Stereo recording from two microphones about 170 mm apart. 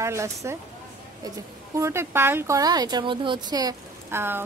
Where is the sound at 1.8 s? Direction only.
15° right (ahead or behind).